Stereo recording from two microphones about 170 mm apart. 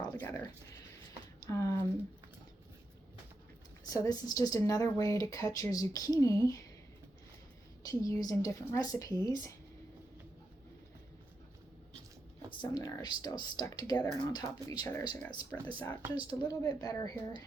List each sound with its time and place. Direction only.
0.0 s a sound: 20° left (ahead or behind)
3.8 s speech: 20° left (ahead or behind)
7.9 s speech: 20° left (ahead or behind)
12.6 s speech: 20° left (ahead or behind)
16.0 s a woman's voice: 10° right (ahead or behind)
16.4 s speech: 25° left (ahead or behind)